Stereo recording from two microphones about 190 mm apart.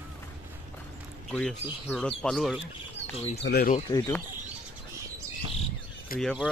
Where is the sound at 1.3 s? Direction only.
5° left (ahead or behind).